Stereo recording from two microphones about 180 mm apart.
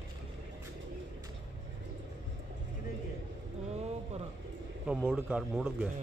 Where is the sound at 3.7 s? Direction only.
35° right (ahead or behind).